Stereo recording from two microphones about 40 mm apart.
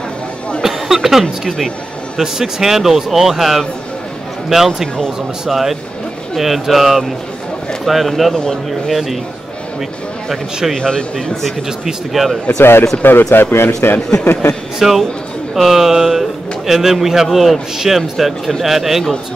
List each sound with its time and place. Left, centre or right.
0.6 s a sound: centre
2.1 s a man's voice: centre
10.8 s speech: centre
11.8 s speech: centre
12.4 s speech: left
13.0 s speech: left
14.8 s a man's voice: centre